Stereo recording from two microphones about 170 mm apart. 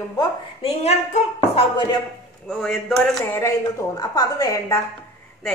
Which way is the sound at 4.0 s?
20° left (ahead or behind).